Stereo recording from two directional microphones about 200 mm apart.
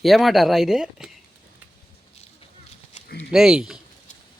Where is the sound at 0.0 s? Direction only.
Centre (ahead or behind).